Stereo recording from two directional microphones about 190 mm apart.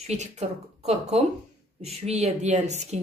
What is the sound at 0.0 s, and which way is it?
A woman's voice, 35° right (ahead or behind).